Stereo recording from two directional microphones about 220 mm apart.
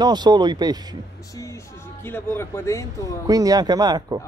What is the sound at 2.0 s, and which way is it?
Speech, 10° left (ahead or behind).